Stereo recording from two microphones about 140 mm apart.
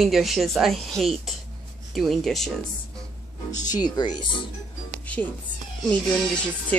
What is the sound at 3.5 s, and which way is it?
Speech, 60° left (ahead or behind).